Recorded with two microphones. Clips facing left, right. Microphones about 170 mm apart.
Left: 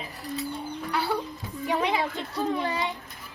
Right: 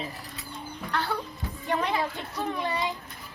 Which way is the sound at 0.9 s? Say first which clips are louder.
Left 2 dB; 10° left (ahead or behind).